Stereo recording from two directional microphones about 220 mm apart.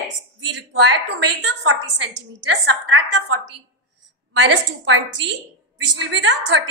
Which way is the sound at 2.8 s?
55° right (ahead or behind).